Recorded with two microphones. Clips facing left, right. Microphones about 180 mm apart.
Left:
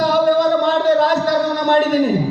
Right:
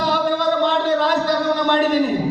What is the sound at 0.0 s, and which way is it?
Music, 45° left (ahead or behind).